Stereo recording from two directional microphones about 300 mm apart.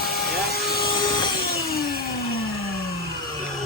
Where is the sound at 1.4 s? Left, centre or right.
Left.